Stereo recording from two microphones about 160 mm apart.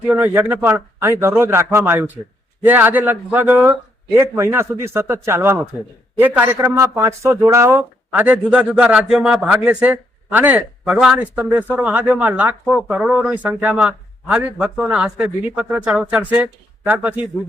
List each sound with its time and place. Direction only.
0.1 s speech: 15° right (ahead or behind)
8.1 s speech: 10° right (ahead or behind)